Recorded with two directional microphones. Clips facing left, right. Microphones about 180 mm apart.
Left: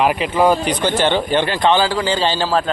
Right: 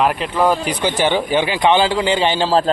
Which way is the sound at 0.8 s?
10° right (ahead or behind).